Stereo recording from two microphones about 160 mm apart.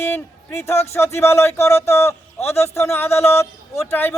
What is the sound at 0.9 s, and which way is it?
A man's voice, 15° left (ahead or behind).